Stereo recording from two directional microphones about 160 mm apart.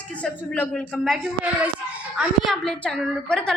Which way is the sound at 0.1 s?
10° left (ahead or behind).